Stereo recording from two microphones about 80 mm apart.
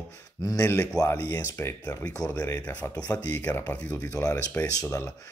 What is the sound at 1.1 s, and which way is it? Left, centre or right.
Speech, left.